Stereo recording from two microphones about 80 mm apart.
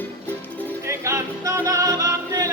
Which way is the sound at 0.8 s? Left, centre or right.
Right.